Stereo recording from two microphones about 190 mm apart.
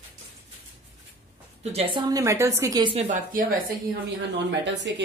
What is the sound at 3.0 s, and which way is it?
Speech, 45° right (ahead or behind).